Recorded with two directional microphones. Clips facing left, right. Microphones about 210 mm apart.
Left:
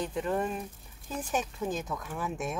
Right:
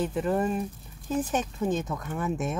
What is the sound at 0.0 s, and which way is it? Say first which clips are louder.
Speech: right 4 dB; centre (ahead or behind).